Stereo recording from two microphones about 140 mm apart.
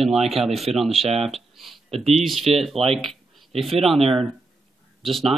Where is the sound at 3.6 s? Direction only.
Centre (ahead or behind).